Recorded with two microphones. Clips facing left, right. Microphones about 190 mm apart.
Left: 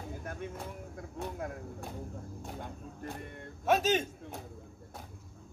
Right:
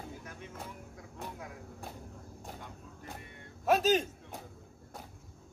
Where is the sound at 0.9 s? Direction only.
50° left (ahead or behind).